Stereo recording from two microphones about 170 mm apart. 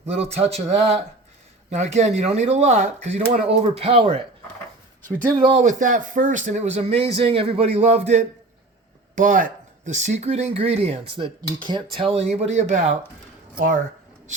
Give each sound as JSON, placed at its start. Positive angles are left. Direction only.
{"t": 0.0, "sound": "speech", "side_deg": -40}
{"t": 5.4, "sound": "speech", "side_deg": -30}
{"t": 5.6, "sound": "speech", "side_deg": -50}
{"t": 9.1, "sound": "speech", "side_deg": -50}